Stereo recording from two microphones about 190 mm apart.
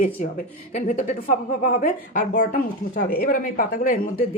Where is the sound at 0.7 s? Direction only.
40° left (ahead or behind).